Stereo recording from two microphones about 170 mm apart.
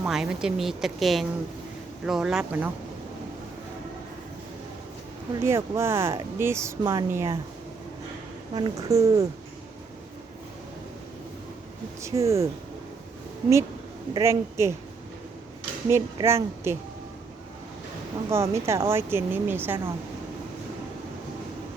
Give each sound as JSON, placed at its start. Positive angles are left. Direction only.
{"t": 0.0, "sound": "speech", "side_deg": -5}
{"t": 5.4, "sound": "speech", "side_deg": -15}
{"t": 8.5, "sound": "speech", "side_deg": -20}
{"t": 12.0, "sound": "speech", "side_deg": -15}
{"t": 14.1, "sound": "speech", "side_deg": -15}
{"t": 15.9, "sound": "speech", "side_deg": -15}
{"t": 18.3, "sound": "speech", "side_deg": -15}